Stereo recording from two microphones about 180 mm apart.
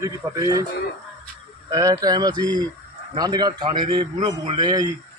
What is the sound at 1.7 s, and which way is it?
A man's voice, 20° right (ahead or behind).